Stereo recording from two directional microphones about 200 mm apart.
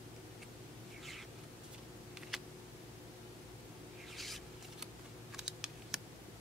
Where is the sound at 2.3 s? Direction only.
Centre (ahead or behind).